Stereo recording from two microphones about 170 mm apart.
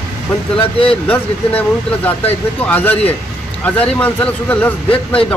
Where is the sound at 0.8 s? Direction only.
10° left (ahead or behind).